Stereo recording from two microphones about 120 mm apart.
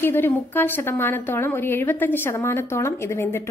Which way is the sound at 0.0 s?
20° left (ahead or behind).